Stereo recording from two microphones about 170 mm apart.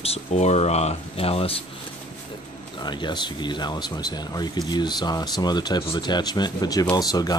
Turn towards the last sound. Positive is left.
turn(degrees=20)  # may be behind; listen again after turning